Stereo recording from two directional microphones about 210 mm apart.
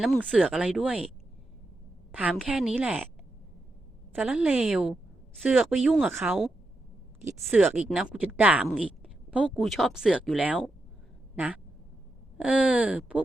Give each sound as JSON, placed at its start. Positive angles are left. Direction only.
{"t": 0.0, "sound": "a woman's voice", "side_deg": -5}
{"t": 2.1, "sound": "a woman's voice", "side_deg": -5}
{"t": 4.1, "sound": "a woman's voice", "side_deg": -5}
{"t": 7.4, "sound": "a woman's voice", "side_deg": -5}